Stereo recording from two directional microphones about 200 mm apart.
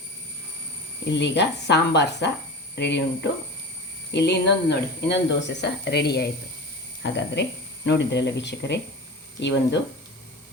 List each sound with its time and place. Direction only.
1.1 s speech: 60° left (ahead or behind)
4.1 s speech: 60° left (ahead or behind)